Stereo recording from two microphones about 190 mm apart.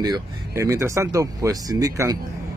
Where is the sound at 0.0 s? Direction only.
20° right (ahead or behind).